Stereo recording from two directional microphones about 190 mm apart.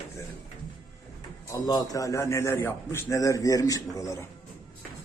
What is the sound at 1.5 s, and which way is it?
A man's voice, 20° left (ahead or behind).